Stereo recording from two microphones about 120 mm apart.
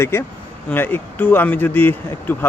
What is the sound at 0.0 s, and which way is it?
Speech, 20° left (ahead or behind).